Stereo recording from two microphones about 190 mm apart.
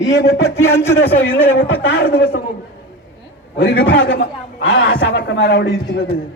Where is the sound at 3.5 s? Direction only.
60° left (ahead or behind); by 4.8 s 80° left.